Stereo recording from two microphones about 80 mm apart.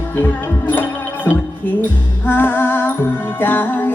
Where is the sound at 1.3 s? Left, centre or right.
Left.